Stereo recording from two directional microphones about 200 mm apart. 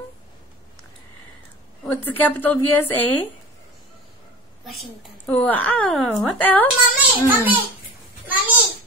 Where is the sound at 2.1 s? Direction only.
10° left (ahead or behind).